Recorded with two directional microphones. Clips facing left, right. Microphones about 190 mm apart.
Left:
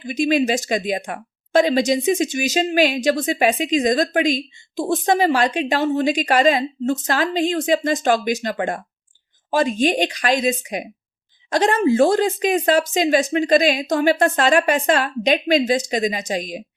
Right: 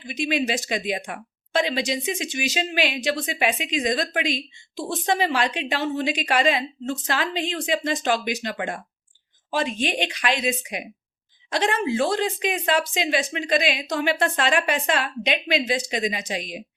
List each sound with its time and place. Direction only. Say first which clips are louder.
0.0 s speech: left 7 dB; 45° left (ahead or behind)